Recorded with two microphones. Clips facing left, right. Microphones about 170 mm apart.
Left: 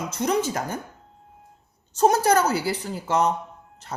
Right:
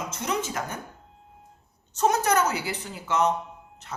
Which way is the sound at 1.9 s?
35° left (ahead or behind).